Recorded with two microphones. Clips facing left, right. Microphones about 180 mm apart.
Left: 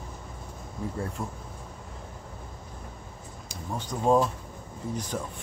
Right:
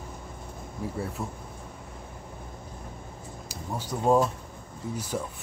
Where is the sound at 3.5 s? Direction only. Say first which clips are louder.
Even; 10° right (ahead or behind).